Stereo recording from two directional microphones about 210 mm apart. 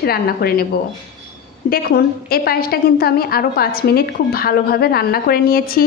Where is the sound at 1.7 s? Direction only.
45° left (ahead or behind).